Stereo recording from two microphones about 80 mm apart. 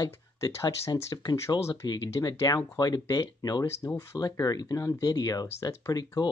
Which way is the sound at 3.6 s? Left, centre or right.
Left.